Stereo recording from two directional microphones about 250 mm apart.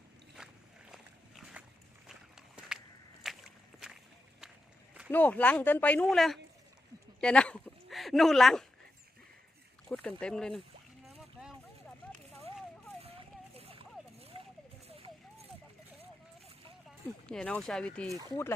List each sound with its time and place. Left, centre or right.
0.4 s a sound: centre
2.0 s walk: centre
3.2 s a sound: centre
5.1 s speech: centre
9.9 s speech: centre
13.6 s clip-clop: right
17.2 s speech: centre